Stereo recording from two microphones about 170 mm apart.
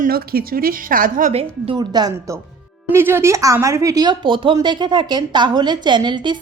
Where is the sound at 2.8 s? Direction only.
15° right (ahead or behind).